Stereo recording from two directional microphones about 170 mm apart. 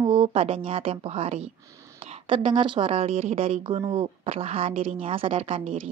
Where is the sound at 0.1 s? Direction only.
35° right (ahead or behind).